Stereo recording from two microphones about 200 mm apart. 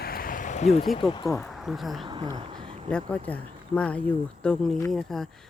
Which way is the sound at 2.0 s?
20° right (ahead or behind).